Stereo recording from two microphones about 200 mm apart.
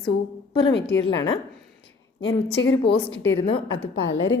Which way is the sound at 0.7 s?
60° left (ahead or behind).